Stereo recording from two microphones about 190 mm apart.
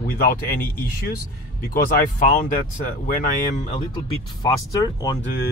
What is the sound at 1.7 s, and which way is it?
Speech, 50° left (ahead or behind).